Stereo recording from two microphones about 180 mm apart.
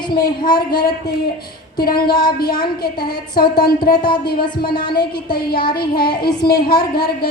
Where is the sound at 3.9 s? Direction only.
25° left (ahead or behind).